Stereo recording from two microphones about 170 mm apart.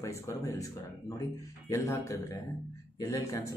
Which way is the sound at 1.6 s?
15° left (ahead or behind).